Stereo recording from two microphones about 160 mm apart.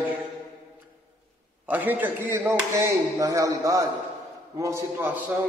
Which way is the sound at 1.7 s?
10° right (ahead or behind).